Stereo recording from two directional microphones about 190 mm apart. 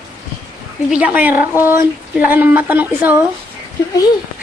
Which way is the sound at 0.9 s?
5° right (ahead or behind).